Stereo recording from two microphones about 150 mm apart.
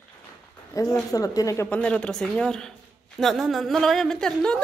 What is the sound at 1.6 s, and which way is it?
A woman's voice, 10° left (ahead or behind).